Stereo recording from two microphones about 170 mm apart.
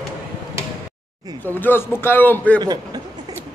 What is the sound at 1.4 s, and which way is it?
A man's voice, 10° left (ahead or behind).